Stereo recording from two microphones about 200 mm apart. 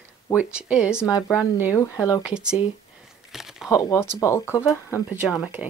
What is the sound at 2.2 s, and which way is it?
Speech, 5° right (ahead or behind).